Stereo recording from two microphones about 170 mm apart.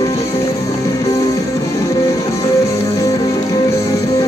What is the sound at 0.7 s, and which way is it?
Music, 20° left (ahead or behind).